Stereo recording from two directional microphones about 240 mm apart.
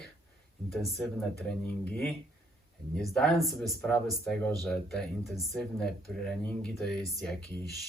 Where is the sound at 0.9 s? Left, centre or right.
Centre.